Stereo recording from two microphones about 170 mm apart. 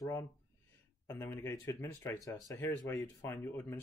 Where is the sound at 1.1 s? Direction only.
15° left (ahead or behind).